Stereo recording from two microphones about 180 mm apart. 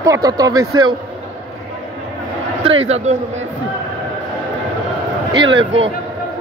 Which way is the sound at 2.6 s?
35° right (ahead or behind).